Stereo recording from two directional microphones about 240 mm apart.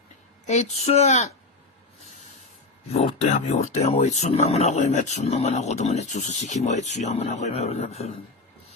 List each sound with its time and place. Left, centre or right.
0.4 s speech: left
2.9 s speech: left